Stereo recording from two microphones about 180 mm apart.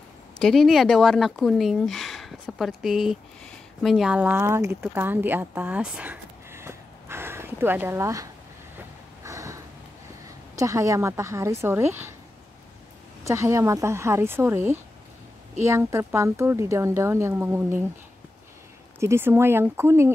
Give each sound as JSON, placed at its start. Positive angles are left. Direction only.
{"t": 0.4, "sound": "speech", "side_deg": 0}
{"t": 4.9, "sound": "a sound", "side_deg": -10}
{"t": 10.5, "sound": "speech", "side_deg": -15}
{"t": 13.2, "sound": "speech", "side_deg": -15}
{"t": 18.9, "sound": "speech", "side_deg": -15}